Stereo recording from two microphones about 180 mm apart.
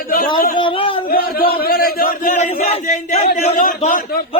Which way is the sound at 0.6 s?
30° left (ahead or behind).